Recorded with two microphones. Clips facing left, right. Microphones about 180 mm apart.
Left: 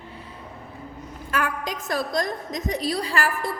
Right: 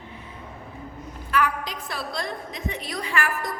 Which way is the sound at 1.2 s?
45° left (ahead or behind).